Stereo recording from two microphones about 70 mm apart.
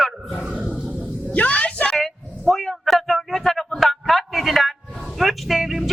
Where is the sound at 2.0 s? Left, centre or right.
Centre.